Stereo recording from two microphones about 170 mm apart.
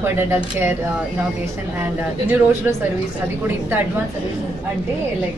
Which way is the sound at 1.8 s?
10° right (ahead or behind).